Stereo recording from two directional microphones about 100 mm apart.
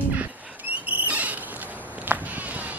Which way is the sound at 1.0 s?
15° right (ahead or behind).